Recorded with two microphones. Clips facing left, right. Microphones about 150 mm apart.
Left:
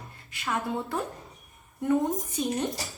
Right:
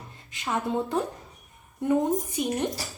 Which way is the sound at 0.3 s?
20° right (ahead or behind).